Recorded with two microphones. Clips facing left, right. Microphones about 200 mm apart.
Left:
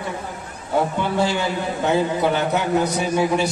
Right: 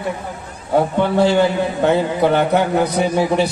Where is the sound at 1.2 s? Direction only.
55° right (ahead or behind).